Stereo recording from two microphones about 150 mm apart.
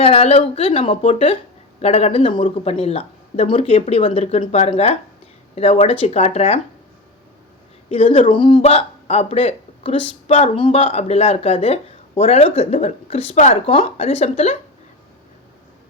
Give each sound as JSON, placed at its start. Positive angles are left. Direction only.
{"t": 0.0, "sound": "speech", "side_deg": 40}
{"t": 7.9, "sound": "speech", "side_deg": 40}